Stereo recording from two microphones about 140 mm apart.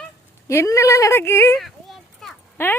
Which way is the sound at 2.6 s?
15° left (ahead or behind).